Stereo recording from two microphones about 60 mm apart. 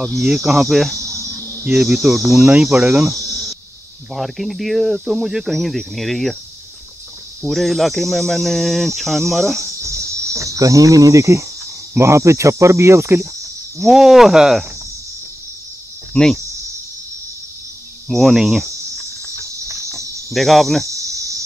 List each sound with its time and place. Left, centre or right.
0.2 s speech: centre
0.9 s cricket: right
1.7 s speech: centre
2.5 s speech: centre
4.1 s speech: centre
7.4 s speech: centre
9.8 s speech: right
13.7 s speech: centre
18.0 s speech: centre
19.3 s cricket: right
20.3 s speech: centre
20.8 s cricket: right